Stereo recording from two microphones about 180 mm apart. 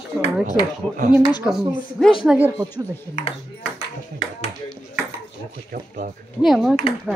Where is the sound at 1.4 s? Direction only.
Centre (ahead or behind).